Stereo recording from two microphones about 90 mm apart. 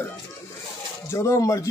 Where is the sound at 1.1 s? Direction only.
35° left (ahead or behind).